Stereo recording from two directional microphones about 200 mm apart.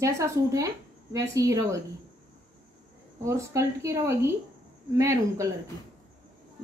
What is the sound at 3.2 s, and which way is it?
A woman's voice, 15° right (ahead or behind).